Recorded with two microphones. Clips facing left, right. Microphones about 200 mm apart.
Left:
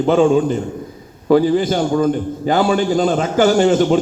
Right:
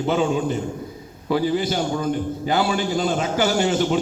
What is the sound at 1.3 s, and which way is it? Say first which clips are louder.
A man's voice: left 7 dB; 50° left (ahead or behind).